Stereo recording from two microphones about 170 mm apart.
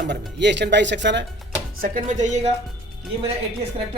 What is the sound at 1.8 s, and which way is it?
Speech, 50° right (ahead or behind).